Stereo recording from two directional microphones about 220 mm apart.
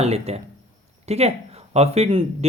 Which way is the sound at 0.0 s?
30° right (ahead or behind).